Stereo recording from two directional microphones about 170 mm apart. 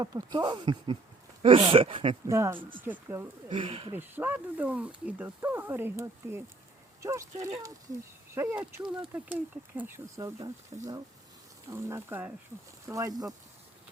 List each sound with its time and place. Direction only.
0.0 s speech: 25° right (ahead or behind)
2.3 s speech: 15° right (ahead or behind)
3.5 s speech: 30° right (ahead or behind)
3.9 s speech: 10° right (ahead or behind)
10.7 s speech: 35° right (ahead or behind)
11.7 s speech: 15° right (ahead or behind)